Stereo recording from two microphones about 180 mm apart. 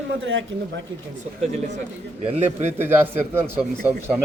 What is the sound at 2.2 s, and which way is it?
Speech, 35° right (ahead or behind).